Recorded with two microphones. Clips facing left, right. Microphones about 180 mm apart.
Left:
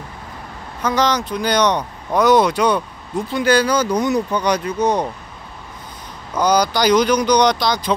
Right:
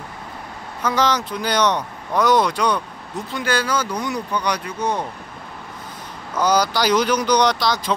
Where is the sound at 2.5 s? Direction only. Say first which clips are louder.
Left 4 dB; 25° left (ahead or behind).